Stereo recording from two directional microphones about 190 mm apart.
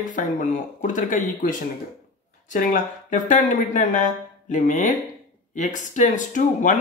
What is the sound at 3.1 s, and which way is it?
Speech, 40° left (ahead or behind).